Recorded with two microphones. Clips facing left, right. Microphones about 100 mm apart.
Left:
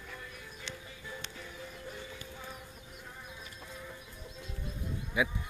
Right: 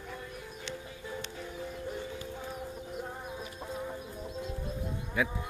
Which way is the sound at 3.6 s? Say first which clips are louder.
Right 9 dB; 40° right (ahead or behind).